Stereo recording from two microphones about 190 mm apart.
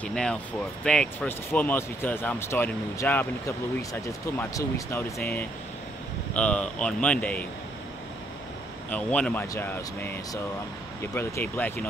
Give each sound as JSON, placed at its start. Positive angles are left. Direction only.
{"t": 0.0, "sound": "speech", "side_deg": 5}
{"t": 8.9, "sound": "speech", "side_deg": 10}